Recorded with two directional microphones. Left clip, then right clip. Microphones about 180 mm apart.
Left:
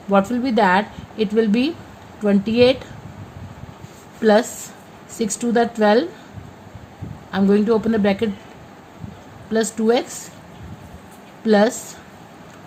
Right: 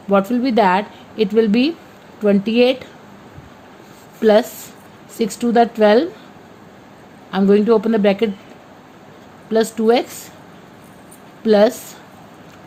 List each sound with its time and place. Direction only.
0.1 s a woman's voice: 25° right (ahead or behind)
4.2 s a woman's voice: 30° right (ahead or behind)
7.3 s a woman's voice: 25° right (ahead or behind)
9.5 s a woman's voice: 30° right (ahead or behind)
11.4 s a woman's voice: 30° right (ahead or behind)